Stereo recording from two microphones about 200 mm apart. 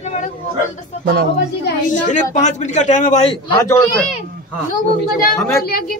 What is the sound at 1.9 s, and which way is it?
A man's voice, 40° left (ahead or behind).